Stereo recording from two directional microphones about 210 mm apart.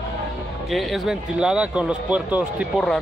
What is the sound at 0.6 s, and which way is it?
Speech, centre (ahead or behind).